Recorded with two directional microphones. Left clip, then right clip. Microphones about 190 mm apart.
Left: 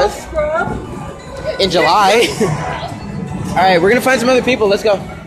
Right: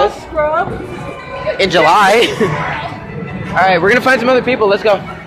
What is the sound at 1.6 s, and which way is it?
Speech, 10° left (ahead or behind).